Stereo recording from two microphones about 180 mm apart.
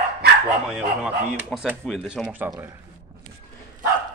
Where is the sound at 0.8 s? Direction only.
5° right (ahead or behind).